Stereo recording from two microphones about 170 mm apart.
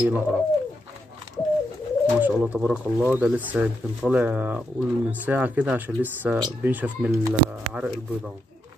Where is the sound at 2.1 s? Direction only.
10° right (ahead or behind).